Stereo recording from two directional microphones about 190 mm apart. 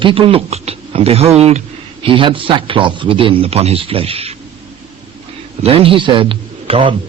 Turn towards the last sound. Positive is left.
turn(degrees=-30)  # may be behind; listen again after turning